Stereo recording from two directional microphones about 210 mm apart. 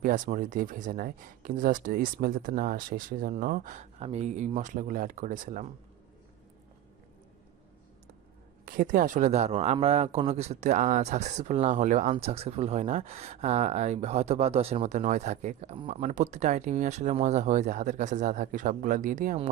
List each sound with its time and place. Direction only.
0.0 s speech: 40° right (ahead or behind)
8.6 s speech: 40° right (ahead or behind)